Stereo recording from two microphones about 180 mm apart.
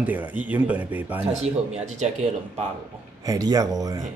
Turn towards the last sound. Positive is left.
turn(degrees=-20)  # may be behind; listen again after turning